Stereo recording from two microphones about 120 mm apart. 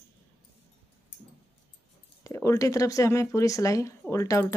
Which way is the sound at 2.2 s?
25° left (ahead or behind).